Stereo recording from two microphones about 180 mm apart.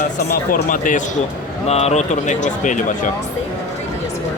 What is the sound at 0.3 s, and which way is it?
Speech, 50° left (ahead or behind).